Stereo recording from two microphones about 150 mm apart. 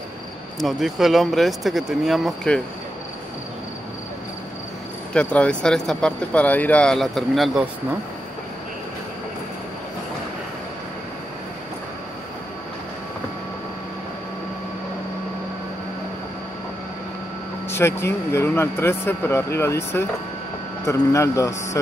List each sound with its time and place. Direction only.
0.6 s speech: centre (ahead or behind)
5.1 s speech: 10° left (ahead or behind)
17.6 s a man's voice: 15° left (ahead or behind)